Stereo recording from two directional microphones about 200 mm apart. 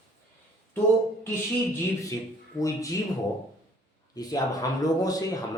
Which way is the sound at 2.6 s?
15° left (ahead or behind).